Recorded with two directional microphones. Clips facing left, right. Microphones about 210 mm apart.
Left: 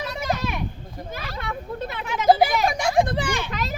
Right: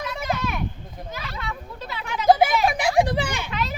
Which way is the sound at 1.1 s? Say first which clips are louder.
Left 2 dB; 50° left (ahead or behind).